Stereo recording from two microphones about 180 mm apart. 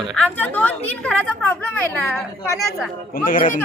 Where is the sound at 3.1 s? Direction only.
50° left (ahead or behind).